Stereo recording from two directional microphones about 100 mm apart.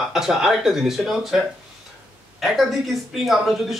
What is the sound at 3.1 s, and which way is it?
Speech, centre (ahead or behind).